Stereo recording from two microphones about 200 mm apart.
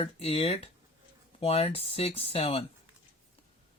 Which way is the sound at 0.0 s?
30° left (ahead or behind).